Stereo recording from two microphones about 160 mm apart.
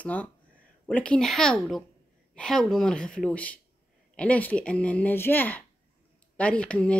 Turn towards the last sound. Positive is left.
turn(degrees=5)  # may be behind; listen again after turning